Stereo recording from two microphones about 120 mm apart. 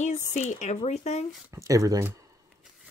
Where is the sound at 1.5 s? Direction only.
25° right (ahead or behind).